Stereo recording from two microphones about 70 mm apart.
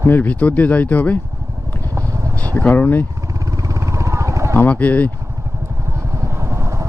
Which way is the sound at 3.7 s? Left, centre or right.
Right.